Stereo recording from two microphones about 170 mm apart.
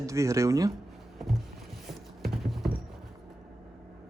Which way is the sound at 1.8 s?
Centre (ahead or behind).